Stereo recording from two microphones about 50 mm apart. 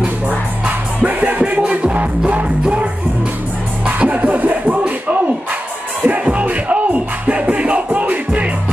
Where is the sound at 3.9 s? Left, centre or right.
Right.